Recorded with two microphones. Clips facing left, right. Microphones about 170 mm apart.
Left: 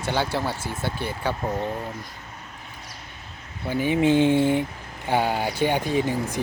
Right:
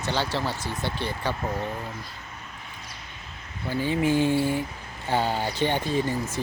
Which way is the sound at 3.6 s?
15° left (ahead or behind).